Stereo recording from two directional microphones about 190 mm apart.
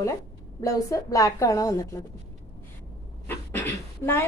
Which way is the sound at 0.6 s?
15° left (ahead or behind).